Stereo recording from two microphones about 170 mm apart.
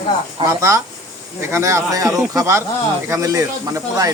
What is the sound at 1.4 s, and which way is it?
Speech, 15° right (ahead or behind).